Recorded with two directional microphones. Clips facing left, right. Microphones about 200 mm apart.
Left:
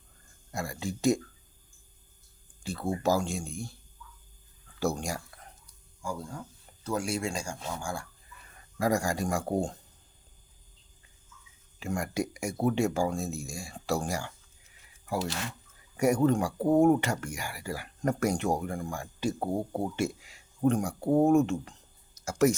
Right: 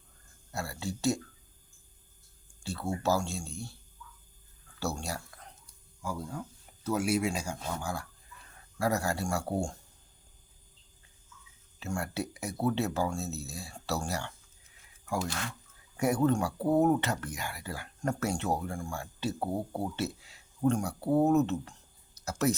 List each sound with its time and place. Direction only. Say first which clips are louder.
0.5 s speech: left 2 dB; 15° left (ahead or behind)
2.6 s speech: left 2 dB; 15° left (ahead or behind)
4.9 s speech: left 3 dB; 15° left (ahead or behind)
6.8 s speech: right 2 dB; 5° right (ahead or behind)
8.8 s speech: left 2 dB; 15° left (ahead or behind)
11.8 s speech: left 3 dB; 15° left (ahead or behind)
16.0 s speech: left 3 dB; 10° left (ahead or behind)